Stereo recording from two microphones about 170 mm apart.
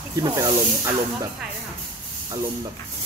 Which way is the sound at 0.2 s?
20° right (ahead or behind).